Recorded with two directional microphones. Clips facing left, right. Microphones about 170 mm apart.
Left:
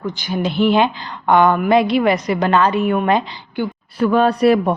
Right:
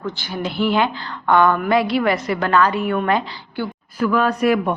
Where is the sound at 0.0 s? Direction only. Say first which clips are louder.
Left 4 dB; 15° left (ahead or behind).